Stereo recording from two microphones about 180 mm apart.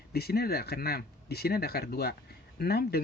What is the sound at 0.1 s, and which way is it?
Speech, 60° left (ahead or behind).